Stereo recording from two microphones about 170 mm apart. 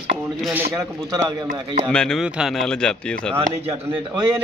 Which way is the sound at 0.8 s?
20° right (ahead or behind).